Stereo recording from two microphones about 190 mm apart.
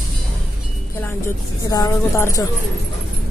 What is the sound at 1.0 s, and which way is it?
Speech, 15° left (ahead or behind).